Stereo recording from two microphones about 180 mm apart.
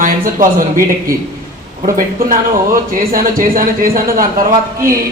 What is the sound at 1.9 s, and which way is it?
A man's voice, 50° right (ahead or behind).